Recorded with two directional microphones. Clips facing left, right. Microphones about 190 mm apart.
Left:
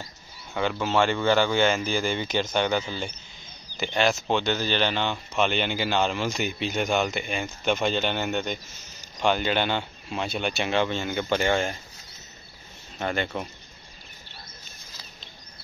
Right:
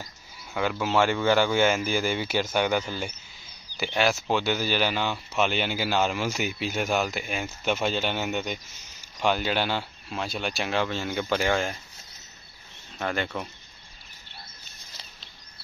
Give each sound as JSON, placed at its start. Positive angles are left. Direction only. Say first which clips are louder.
{"t": 0.6, "sound": "speech", "louder": "even", "side_deg": -5}
{"t": 13.0, "sound": "speech", "louder": "left 1 dB", "side_deg": 0}